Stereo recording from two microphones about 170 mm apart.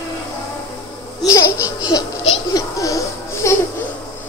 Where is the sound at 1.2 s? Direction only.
20° left (ahead or behind).